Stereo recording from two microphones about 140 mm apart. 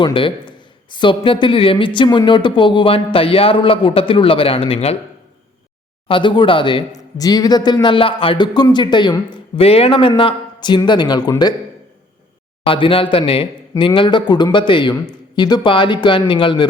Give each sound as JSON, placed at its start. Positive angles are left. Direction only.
{"t": 0.0, "sound": "speech", "side_deg": 40}
{"t": 6.1, "sound": "speech", "side_deg": 35}
{"t": 12.6, "sound": "speech", "side_deg": 40}